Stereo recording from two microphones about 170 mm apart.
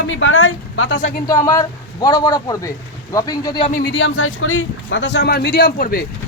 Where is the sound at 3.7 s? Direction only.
65° left (ahead or behind); by 4.1 s 80° left.